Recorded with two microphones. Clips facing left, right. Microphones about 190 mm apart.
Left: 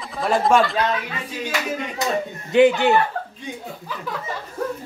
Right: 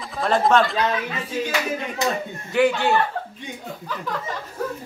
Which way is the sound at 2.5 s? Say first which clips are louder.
Left 4 dB; 20° left (ahead or behind).